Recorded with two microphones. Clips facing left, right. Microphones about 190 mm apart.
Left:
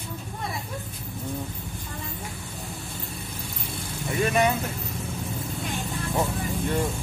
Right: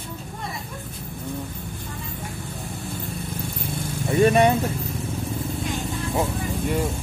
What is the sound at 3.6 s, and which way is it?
Vehicle, 50° right (ahead or behind).